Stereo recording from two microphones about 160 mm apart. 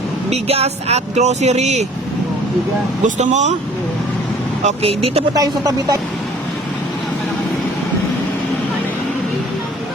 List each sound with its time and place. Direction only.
0.3 s speech: 40° right (ahead or behind)
3.0 s speech: 45° right (ahead or behind)
4.6 s speech: 40° right (ahead or behind)
5.3 s speech: 20° right (ahead or behind)